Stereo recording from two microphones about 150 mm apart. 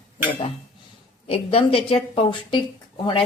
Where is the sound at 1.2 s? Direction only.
40° left (ahead or behind).